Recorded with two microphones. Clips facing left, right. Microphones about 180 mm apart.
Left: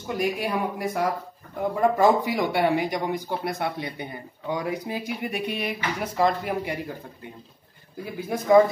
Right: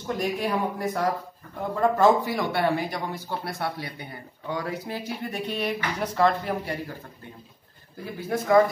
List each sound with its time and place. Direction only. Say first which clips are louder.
0.0 s speech: left 1 dB; 10° left (ahead or behind)
8.0 s speech: even; 15° left (ahead or behind)